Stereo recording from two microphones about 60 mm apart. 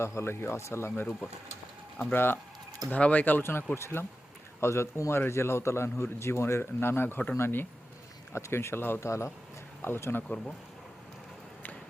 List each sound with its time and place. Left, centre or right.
0.0 s a man's voice: left
2.1 s speech: left
2.9 s a man's voice: left
8.3 s a man's voice: left
9.0 s speech: left
9.8 s speech: left
10.2 s speech: centre